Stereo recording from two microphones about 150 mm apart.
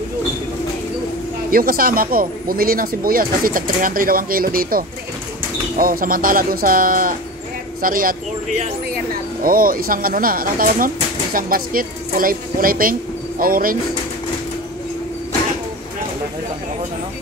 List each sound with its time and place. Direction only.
1.5 s speech: 75° right (ahead or behind)